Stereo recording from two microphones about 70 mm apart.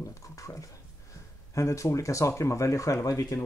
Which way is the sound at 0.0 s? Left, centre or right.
Left.